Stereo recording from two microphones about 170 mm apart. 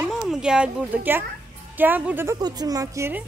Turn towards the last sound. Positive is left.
turn(degrees=-15)  # may be behind; listen again after turning